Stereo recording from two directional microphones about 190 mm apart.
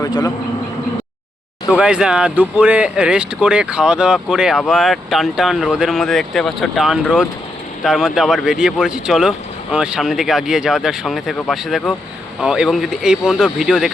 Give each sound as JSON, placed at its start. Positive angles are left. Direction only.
{"t": 0.0, "sound": "speech", "side_deg": 20}
{"t": 1.7, "sound": "speech", "side_deg": -5}